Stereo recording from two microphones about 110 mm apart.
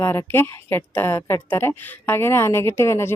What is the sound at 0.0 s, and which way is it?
A woman's voice, 20° left (ahead or behind).